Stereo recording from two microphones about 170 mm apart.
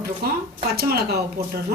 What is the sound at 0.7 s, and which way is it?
Speech, 65° right (ahead or behind).